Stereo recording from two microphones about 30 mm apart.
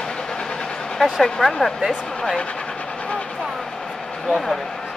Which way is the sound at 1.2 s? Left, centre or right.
Centre.